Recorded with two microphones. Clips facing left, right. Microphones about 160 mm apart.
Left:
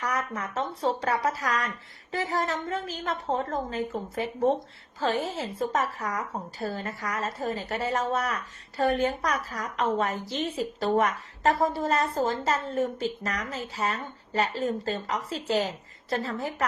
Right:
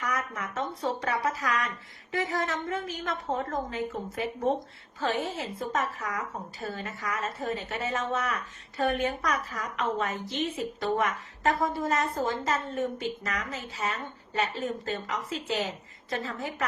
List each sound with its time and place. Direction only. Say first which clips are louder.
0.0 s a woman's voice: left 2 dB; 30° left (ahead or behind)